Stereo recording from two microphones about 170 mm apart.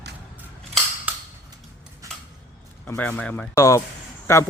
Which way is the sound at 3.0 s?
5° left (ahead or behind).